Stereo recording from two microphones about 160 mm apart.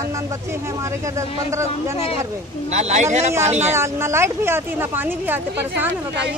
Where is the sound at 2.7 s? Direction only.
45° right (ahead or behind).